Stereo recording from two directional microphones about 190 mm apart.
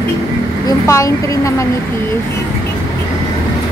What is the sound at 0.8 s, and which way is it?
Speech, 15° left (ahead or behind).